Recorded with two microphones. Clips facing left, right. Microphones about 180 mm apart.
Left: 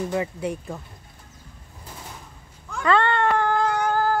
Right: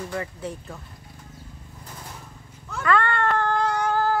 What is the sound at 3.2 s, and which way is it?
Cat, 10° left (ahead or behind).